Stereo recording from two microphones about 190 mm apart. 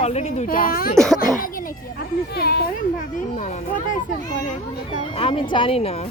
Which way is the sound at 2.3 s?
55° left (ahead or behind).